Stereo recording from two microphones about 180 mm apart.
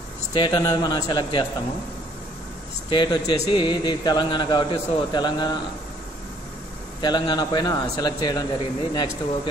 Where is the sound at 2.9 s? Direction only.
25° left (ahead or behind).